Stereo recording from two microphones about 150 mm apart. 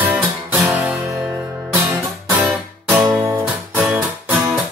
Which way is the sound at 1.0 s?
20° right (ahead or behind).